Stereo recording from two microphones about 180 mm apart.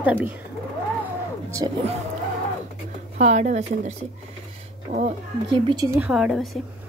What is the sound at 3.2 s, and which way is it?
A woman's voice, 40° right (ahead or behind).